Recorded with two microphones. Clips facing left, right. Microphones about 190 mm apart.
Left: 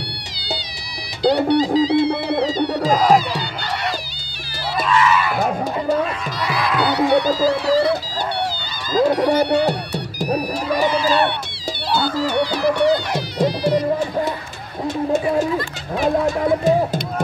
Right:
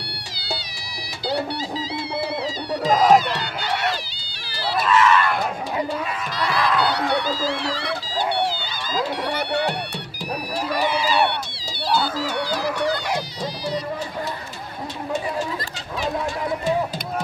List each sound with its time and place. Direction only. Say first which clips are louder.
1.2 s music: left 10 dB; 20° left (ahead or behind)
2.9 s music: even; centre (ahead or behind)
4.7 s a sound: even; centre (ahead or behind)
6.4 s honk: left 1 dB; 5° left (ahead or behind)
7.2 s a sound: left 8 dB; 40° left (ahead or behind)
8.9 s music: left 10 dB; 45° left (ahead or behind)
11.0 s honk: left 3 dB; 10° right (ahead or behind)
12.3 s a sound: left 6 dB; 65° left (ahead or behind)
13.4 s music: left 9 dB; 55° left (ahead or behind)